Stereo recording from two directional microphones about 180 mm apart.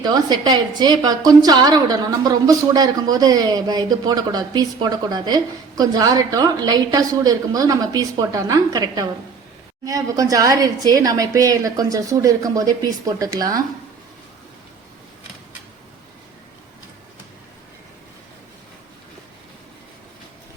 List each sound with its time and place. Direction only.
0.0 s a woman's voice: 20° right (ahead or behind)